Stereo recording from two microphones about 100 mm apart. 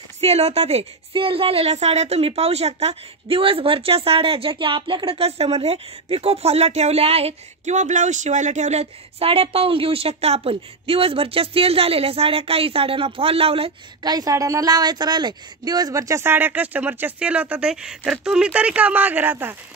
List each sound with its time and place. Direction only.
0.2 s a woman's voice: 90° right
8.7 s a woman's voice: 80° right
14.0 s a woman's voice: 40° right (ahead or behind); by 19.5 s 20° right (ahead or behind)